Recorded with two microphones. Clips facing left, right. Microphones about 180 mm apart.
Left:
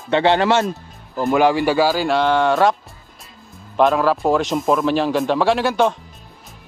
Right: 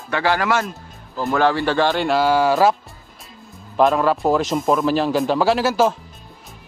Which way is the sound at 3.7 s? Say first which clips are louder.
Left 1 dB; centre (ahead or behind).